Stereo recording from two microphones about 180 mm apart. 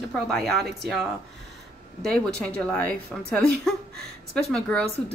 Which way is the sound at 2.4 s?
5° left (ahead or behind).